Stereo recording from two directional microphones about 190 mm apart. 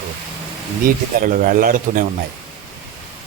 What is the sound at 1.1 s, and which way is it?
Speech, 45° right (ahead or behind).